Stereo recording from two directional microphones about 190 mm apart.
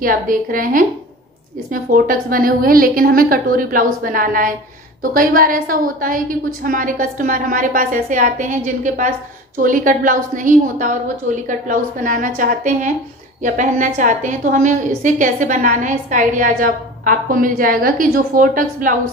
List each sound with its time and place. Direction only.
0.0 s a woman's voice: 45° right (ahead or behind)